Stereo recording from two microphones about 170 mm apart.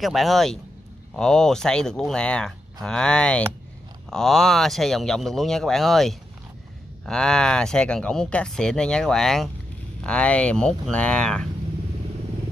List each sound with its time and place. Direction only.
0.0 s speech: centre (ahead or behind)